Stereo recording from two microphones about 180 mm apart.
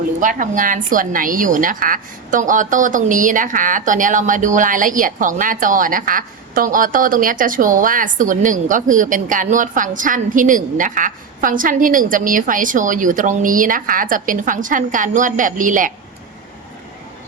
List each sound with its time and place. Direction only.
0.2 s a woman's voice: 45° right (ahead or behind)